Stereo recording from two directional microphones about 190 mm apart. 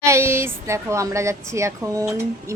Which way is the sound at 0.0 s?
15° right (ahead or behind).